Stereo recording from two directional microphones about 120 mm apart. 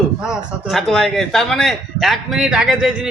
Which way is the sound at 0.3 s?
Centre (ahead or behind).